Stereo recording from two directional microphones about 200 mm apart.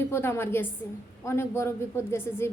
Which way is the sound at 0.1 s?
10° left (ahead or behind).